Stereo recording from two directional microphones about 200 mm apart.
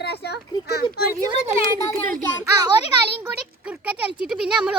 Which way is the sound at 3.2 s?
10° right (ahead or behind).